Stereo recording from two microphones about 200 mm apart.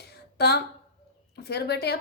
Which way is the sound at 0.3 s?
55° left (ahead or behind).